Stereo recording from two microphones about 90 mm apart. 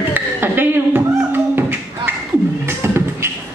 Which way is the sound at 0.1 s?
25° right (ahead or behind).